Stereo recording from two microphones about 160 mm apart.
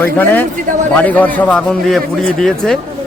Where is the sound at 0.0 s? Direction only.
10° left (ahead or behind).